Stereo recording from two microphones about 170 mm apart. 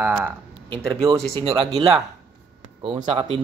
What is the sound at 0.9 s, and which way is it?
Speech, 25° right (ahead or behind).